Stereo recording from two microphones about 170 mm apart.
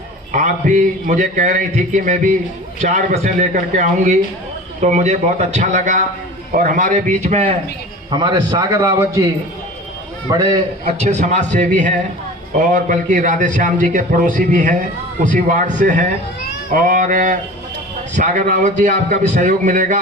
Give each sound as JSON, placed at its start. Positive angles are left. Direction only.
{"t": 0.3, "sound": "a man's voice", "side_deg": -45}
{"t": 8.1, "sound": "a man's voice", "side_deg": -25}
{"t": 10.9, "sound": "a man's voice", "side_deg": -40}